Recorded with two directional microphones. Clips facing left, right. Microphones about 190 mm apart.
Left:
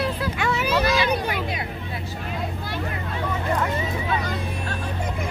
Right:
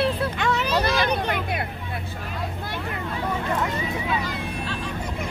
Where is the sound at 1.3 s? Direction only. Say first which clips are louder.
Right 1 dB; 55° right (ahead or behind).